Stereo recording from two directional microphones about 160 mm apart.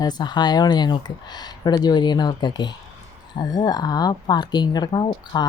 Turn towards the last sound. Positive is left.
turn(degrees=30)  # may be behind; listen again after turning